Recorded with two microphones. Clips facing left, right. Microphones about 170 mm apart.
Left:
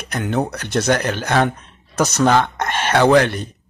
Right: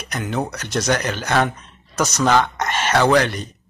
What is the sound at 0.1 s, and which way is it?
Speech, 60° left (ahead or behind).